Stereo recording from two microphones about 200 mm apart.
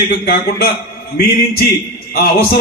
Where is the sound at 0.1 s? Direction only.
45° left (ahead or behind).